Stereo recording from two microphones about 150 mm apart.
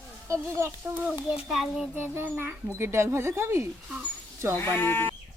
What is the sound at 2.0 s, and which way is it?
A child's voice, 15° right (ahead or behind).